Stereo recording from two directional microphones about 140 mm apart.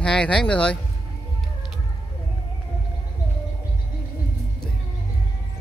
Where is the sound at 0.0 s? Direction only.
5° left (ahead or behind).